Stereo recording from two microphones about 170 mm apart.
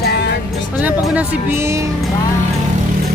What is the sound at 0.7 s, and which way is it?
Speech, 10° right (ahead or behind).